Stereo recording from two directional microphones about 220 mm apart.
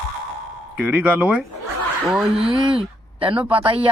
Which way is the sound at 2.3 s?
25° right (ahead or behind).